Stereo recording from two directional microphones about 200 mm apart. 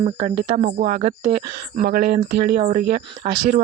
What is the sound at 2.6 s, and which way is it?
Speech, 35° right (ahead or behind).